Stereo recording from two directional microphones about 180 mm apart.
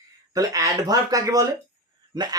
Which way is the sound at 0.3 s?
20° right (ahead or behind).